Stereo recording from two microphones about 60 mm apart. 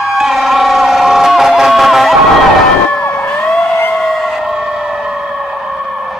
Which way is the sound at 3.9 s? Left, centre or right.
Centre.